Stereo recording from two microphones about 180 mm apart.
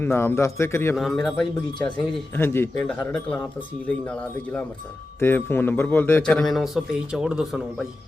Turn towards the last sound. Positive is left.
turn(degrees=0)  # may be behind; listen again after turning